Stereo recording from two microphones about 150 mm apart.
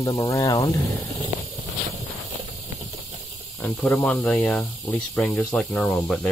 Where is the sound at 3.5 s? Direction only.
10° left (ahead or behind).